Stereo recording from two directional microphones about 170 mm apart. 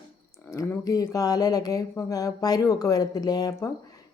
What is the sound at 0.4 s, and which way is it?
Speech, 15° left (ahead or behind).